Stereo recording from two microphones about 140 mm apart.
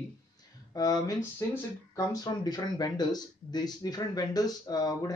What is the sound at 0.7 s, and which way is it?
Speech, 25° left (ahead or behind).